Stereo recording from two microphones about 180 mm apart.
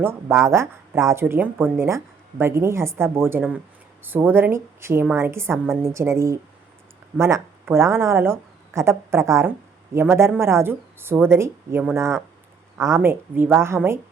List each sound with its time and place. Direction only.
0.0 s speech: 15° right (ahead or behind)